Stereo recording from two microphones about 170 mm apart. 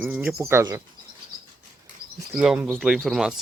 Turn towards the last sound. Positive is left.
turn(degrees=0)  # may be behind; listen again after turning